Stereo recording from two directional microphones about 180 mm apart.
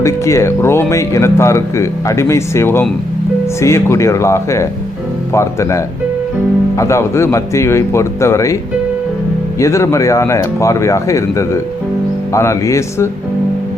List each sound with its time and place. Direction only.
0.0 s speech: 15° left (ahead or behind)
9.6 s speech: 15° left (ahead or behind)